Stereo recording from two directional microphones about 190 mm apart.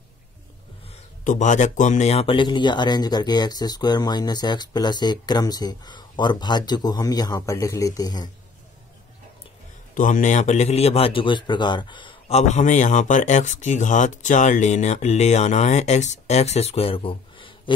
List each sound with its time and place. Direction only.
0.8 s speech: 40° left (ahead or behind); by 8.3 s 20° left (ahead or behind)
9.9 s speech: 45° left (ahead or behind); by 17.7 s 25° left (ahead or behind)